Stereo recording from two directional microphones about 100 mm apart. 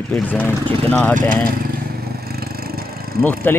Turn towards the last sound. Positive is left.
turn(degrees=20)  # may be behind; listen again after turning